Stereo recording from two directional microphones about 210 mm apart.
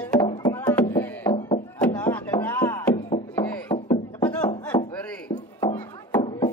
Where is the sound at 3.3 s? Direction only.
10° left (ahead or behind).